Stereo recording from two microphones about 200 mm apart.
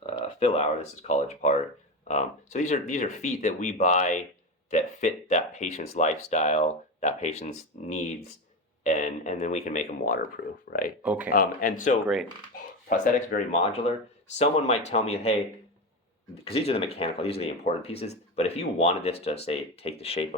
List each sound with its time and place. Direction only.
0.0 s speech: 30° left (ahead or behind)
7.7 s speech: 45° left (ahead or behind)
11.0 s speech: 5° right (ahead or behind)
11.3 s speech: 45° left (ahead or behind)
12.0 s speech: centre (ahead or behind)
12.9 s speech: 40° left (ahead or behind)
16.4 s speech: 30° left (ahead or behind)